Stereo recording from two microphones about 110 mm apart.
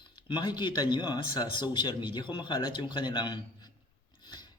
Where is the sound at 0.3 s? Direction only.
45° left (ahead or behind).